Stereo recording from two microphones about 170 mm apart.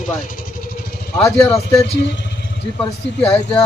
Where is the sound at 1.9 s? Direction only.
90° left.